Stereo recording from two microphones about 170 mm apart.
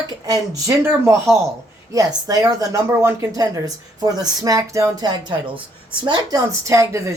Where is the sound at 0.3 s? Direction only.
20° right (ahead or behind).